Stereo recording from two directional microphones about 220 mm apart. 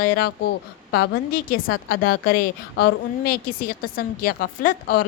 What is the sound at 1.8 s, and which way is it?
A woman's voice, 40° left (ahead or behind).